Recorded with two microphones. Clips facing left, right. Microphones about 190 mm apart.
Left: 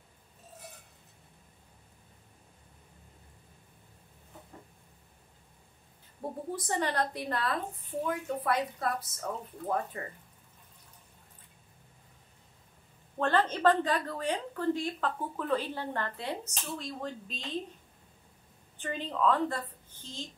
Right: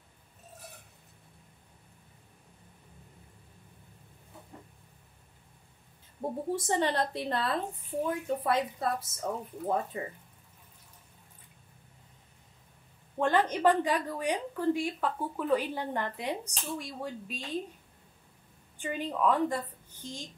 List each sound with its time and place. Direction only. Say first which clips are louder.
6.2 s speech: right 4 dB; 35° right (ahead or behind)
13.2 s a woman's voice: right 1 dB; 15° right (ahead or behind)
18.8 s a woman's voice: right 1 dB; 10° right (ahead or behind)